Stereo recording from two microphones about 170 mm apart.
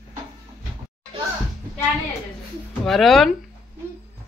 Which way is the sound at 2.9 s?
Centre (ahead or behind).